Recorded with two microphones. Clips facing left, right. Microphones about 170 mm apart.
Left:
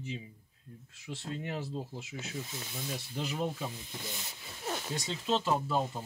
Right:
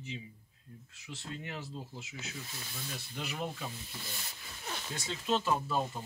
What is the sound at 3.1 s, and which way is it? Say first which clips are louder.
Speech: left 4 dB; 30° left (ahead or behind).